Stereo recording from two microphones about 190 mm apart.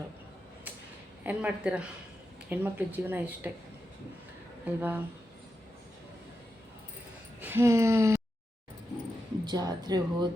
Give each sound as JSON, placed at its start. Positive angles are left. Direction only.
{"t": 1.2, "sound": "speech", "side_deg": -10}
{"t": 4.6, "sound": "speech", "side_deg": -10}
{"t": 7.4, "sound": "speech", "side_deg": -15}
{"t": 9.4, "sound": "speech", "side_deg": -20}